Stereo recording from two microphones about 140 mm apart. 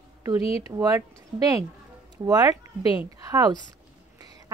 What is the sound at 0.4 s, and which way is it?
Speech, 45° left (ahead or behind).